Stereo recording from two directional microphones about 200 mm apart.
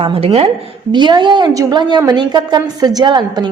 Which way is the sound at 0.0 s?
30° right (ahead or behind).